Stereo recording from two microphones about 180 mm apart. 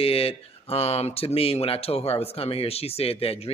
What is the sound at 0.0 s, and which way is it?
Speech, 30° left (ahead or behind).